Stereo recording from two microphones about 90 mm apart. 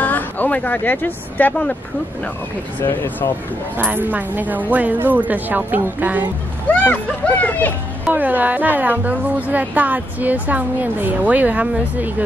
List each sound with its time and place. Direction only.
0.0 s speech: 15° left (ahead or behind)
3.9 s a woman's voice: 20° right (ahead or behind)
6.9 s speech: 20° left (ahead or behind)
8.1 s a woman's voice: 20° right (ahead or behind)